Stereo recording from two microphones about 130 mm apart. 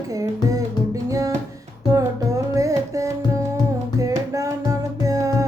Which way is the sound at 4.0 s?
25° right (ahead or behind).